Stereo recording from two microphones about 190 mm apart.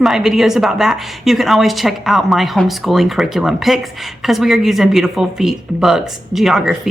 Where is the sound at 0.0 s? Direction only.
Centre (ahead or behind).